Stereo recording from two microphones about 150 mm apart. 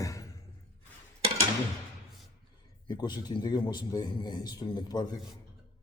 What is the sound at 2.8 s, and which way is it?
A man's voice, 30° left (ahead or behind).